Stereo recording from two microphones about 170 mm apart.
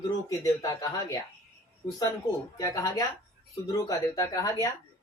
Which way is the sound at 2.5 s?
20° left (ahead or behind).